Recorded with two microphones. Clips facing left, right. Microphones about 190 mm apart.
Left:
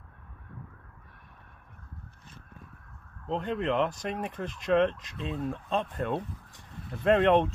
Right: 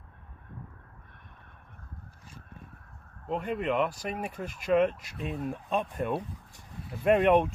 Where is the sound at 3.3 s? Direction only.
5° right (ahead or behind).